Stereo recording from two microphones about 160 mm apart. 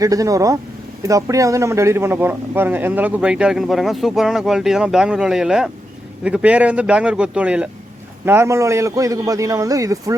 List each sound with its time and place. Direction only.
0.0 s a man's voice: 20° right (ahead or behind)